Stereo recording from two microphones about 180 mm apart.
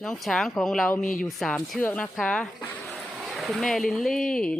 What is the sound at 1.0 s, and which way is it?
Speech, 50° left (ahead or behind).